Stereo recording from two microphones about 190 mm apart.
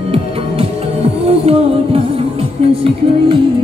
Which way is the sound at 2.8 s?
25° right (ahead or behind).